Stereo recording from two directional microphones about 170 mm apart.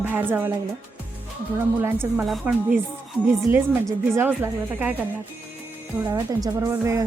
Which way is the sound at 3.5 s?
10° right (ahead or behind).